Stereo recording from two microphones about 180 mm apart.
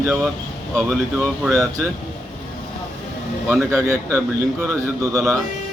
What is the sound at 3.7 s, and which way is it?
Speech, 15° right (ahead or behind).